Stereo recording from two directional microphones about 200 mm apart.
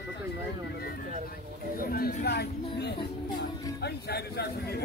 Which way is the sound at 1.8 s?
50° left (ahead or behind).